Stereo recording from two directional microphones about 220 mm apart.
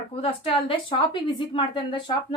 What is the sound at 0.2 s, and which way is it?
A woman's voice, 25° left (ahead or behind).